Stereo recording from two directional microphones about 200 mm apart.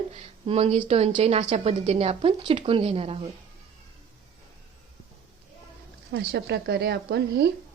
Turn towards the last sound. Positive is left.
turn(degrees=-55)  # may be behind; listen again after turning